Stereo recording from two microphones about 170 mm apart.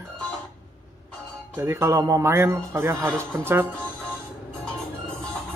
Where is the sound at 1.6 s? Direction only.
15° right (ahead or behind).